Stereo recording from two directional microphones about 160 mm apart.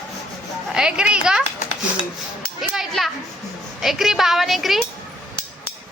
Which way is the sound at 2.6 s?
Centre (ahead or behind).